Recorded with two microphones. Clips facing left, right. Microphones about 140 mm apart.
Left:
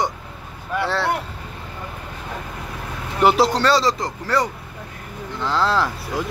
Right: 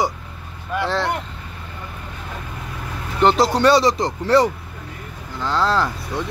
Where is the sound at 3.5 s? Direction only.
15° right (ahead or behind).